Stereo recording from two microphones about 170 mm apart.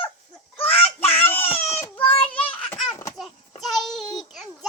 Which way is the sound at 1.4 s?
35° left (ahead or behind).